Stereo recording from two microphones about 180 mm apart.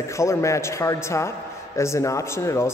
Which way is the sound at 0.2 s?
15° left (ahead or behind).